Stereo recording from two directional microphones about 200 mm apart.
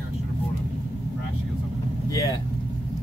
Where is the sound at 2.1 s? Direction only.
15° left (ahead or behind).